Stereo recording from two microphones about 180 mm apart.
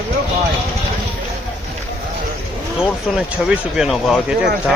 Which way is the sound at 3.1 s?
5° right (ahead or behind).